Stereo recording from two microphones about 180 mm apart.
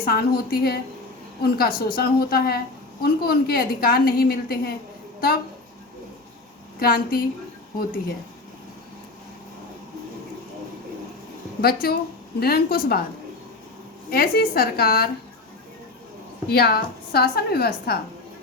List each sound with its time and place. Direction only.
0.0 s a woman's voice: 60° left (ahead or behind)
6.7 s a woman's voice: 55° left (ahead or behind)
11.6 s a woman's voice: 55° left (ahead or behind)
14.1 s a woman's voice: 55° left (ahead or behind)
16.5 s a woman's voice: 60° left (ahead or behind)